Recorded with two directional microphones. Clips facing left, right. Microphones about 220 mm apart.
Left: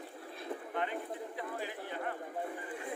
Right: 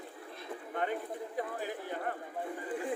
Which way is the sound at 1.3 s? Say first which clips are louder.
Right 3 dB; 45° right (ahead or behind).